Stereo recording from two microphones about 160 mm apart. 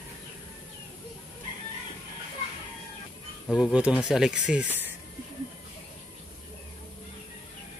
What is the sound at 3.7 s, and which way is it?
Speech, 5° right (ahead or behind).